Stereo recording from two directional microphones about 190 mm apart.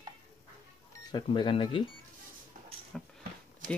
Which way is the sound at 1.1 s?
25° left (ahead or behind).